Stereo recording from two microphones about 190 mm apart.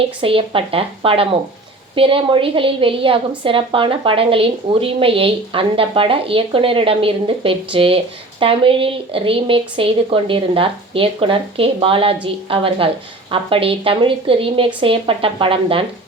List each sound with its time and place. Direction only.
0.2 s a woman's voice: 30° right (ahead or behind)